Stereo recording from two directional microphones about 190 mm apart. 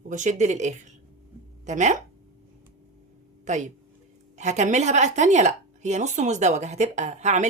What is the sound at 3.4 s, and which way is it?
A woman's voice, 40° right (ahead or behind).